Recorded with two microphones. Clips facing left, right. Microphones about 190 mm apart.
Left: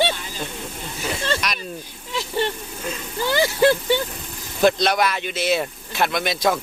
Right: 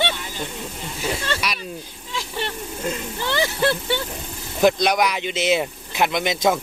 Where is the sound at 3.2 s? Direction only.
10° left (ahead or behind).